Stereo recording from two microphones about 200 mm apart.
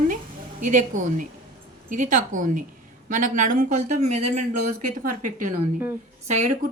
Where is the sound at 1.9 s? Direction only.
40° right (ahead or behind).